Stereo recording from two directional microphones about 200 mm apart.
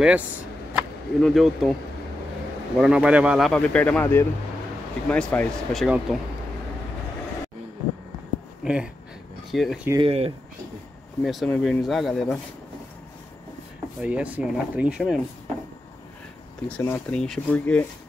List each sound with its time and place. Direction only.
0.7 s speech: centre (ahead or behind)
2.8 s speech: 5° right (ahead or behind)
8.6 s speech: 5° right (ahead or behind)
10.0 s speech: 30° right (ahead or behind)
11.2 s speech: centre (ahead or behind)
14.0 s speech: 5° right (ahead or behind)
16.6 s speech: 10° left (ahead or behind)